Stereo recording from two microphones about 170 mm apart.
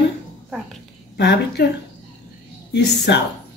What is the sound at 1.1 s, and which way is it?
Speech, 80° left.